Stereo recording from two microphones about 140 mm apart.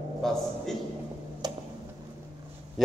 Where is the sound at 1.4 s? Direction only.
30° right (ahead or behind).